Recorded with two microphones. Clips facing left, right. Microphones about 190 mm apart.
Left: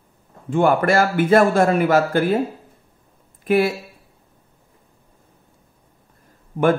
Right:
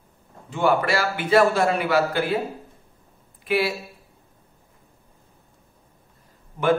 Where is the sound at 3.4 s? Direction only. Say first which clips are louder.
Left 6 dB; 45° left (ahead or behind).